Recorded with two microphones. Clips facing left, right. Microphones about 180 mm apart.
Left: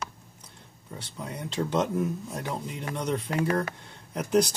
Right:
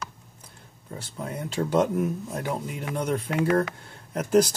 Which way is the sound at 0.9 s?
5° right (ahead or behind).